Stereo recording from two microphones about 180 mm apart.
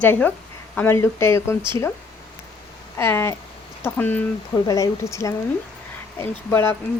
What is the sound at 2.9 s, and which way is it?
Speech, 15° left (ahead or behind).